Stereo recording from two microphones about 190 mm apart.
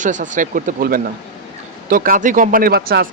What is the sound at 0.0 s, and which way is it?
Speech, 40° right (ahead or behind).